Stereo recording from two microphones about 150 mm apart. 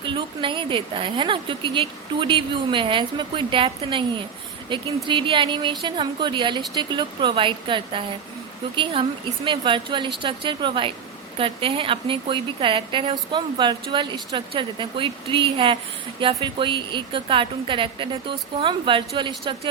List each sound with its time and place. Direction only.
0.0 s a woman's voice: 30° right (ahead or behind)